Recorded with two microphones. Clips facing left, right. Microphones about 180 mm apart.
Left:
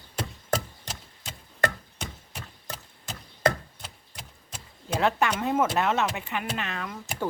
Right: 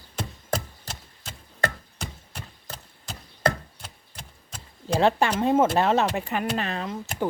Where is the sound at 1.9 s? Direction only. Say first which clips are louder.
Right 1 dB; centre (ahead or behind).